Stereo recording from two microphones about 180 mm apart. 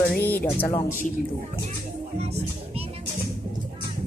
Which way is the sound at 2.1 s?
35° right (ahead or behind).